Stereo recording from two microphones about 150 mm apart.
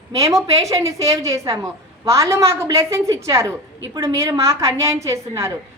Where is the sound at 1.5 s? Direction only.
20° right (ahead or behind).